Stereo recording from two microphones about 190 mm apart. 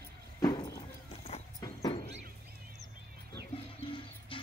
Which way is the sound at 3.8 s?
25° left (ahead or behind).